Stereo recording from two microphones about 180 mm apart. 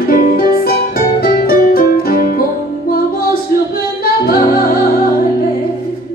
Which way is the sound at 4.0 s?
55° left (ahead or behind).